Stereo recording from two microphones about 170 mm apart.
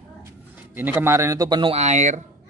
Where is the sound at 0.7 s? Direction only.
10° right (ahead or behind).